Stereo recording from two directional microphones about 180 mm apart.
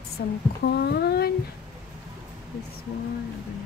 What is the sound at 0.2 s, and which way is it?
Speech, 70° left (ahead or behind).